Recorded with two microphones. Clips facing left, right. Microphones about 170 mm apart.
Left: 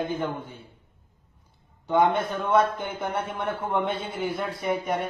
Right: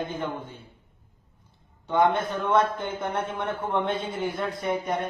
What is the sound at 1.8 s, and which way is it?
A man's voice, 10° left (ahead or behind).